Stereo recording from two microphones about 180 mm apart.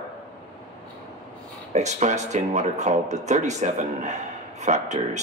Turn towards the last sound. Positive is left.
turn(degrees=-40)  # may be behind; listen again after turning